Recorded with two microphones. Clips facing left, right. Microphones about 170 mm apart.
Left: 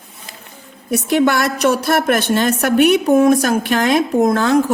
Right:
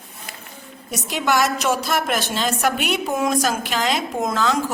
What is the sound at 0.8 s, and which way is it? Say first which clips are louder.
A woman's voice: left 8 dB; 60° left (ahead or behind).